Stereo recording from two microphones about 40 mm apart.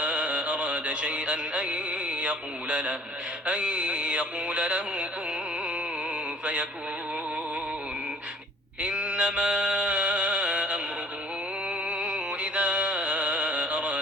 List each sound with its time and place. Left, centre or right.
0.0 s music: right
3.4 s a sound: right
6.4 s music: right
8.8 s mantra: right
11.9 s music: right